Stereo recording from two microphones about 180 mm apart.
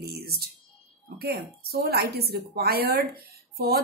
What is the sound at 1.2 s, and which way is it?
Speech, 60° right (ahead or behind).